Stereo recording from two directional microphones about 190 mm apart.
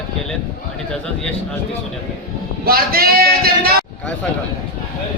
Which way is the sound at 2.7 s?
50° right (ahead or behind).